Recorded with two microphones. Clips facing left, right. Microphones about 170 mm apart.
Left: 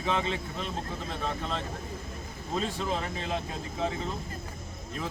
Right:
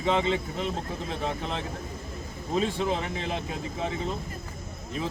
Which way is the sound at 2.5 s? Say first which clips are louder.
Right 4 dB; 20° right (ahead or behind).